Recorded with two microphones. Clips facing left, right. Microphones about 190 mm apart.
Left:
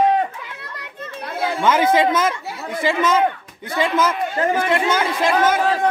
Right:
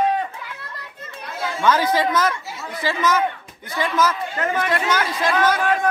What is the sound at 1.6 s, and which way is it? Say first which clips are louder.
Speech: left 2 dB; 20° left (ahead or behind).